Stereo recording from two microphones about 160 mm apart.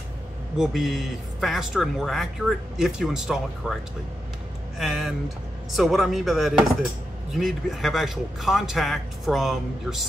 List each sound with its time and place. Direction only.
0.6 s speech: centre (ahead or behind)
4.7 s speech: centre (ahead or behind)